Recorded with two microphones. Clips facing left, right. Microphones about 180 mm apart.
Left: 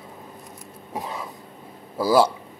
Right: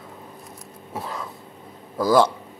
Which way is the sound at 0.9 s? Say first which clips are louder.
Even; 15° left (ahead or behind).